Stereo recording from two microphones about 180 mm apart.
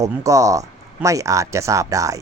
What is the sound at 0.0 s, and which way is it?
Speech, 15° right (ahead or behind).